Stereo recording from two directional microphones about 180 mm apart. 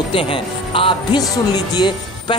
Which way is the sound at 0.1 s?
30° left (ahead or behind).